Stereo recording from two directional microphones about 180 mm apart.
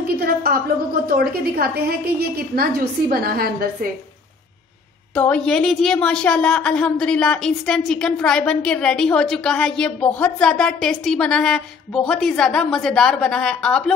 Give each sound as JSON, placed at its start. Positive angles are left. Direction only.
{"t": 0.2, "sound": "a woman's voice", "side_deg": -55}
{"t": 5.1, "sound": "a woman's voice", "side_deg": 5}